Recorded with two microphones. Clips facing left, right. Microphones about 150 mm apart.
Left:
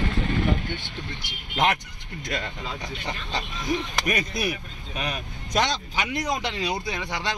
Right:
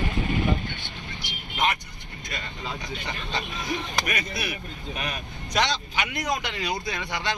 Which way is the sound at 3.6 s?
40° left (ahead or behind).